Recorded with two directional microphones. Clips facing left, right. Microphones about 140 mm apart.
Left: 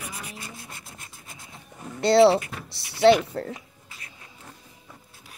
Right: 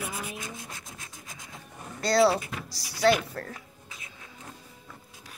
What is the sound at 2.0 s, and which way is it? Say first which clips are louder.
Speech: left 6 dB; 25° left (ahead or behind).